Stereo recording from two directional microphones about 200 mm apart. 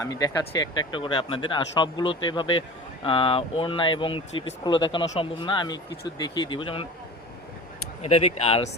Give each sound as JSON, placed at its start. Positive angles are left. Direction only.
{"t": 0.0, "sound": "speech", "side_deg": 20}
{"t": 8.0, "sound": "speech", "side_deg": 35}